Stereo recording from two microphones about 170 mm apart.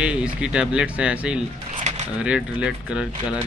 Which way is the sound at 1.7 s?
40° right (ahead or behind).